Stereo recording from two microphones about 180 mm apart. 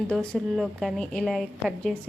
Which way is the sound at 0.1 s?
Centre (ahead or behind).